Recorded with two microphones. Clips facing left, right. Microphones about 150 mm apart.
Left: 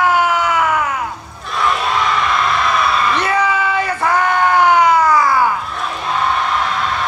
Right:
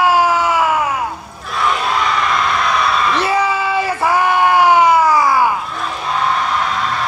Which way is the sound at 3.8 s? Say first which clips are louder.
Right 1 dB; 10° right (ahead or behind).